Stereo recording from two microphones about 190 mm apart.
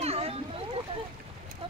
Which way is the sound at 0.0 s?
30° right (ahead or behind).